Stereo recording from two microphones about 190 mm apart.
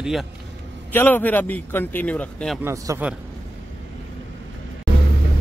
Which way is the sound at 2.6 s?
15° right (ahead or behind).